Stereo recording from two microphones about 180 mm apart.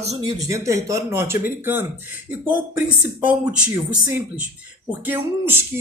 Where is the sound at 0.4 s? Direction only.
15° right (ahead or behind).